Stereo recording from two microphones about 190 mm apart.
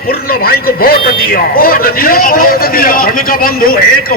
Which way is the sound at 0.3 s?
50° left (ahead or behind).